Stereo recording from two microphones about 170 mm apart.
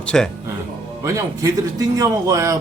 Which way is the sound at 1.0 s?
20° right (ahead or behind).